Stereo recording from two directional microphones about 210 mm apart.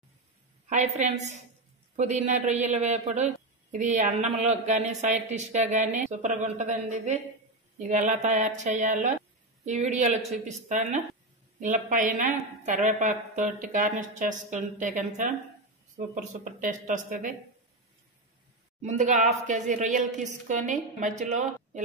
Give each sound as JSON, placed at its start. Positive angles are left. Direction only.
{"t": 0.7, "sound": "a woman's voice", "side_deg": -35}
{"t": 18.8, "sound": "a woman's voice", "side_deg": -35}